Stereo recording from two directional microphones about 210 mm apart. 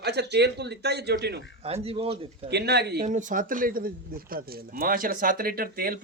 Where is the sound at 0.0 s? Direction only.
50° right (ahead or behind).